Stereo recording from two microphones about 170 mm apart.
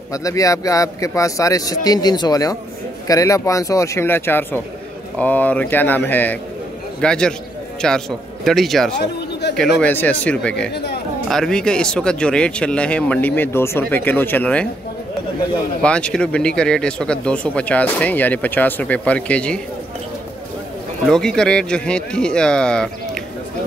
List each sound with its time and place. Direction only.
0.1 s speech: 20° left (ahead or behind); by 8.9 s centre (ahead or behind)
9.0 s a sound: 80° left
9.6 s speech: 10° left (ahead or behind)
10.7 s speech: 75° left (ahead or behind)
11.2 s speech: 5° left (ahead or behind)
15.8 s speech: 5° left (ahead or behind)
21.1 s speech: 5° left (ahead or behind)